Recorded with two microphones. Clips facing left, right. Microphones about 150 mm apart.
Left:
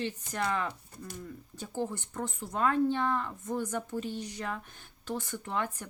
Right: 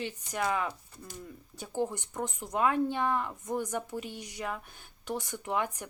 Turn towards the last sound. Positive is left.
turn(degrees=-15)  # may be behind; listen again after turning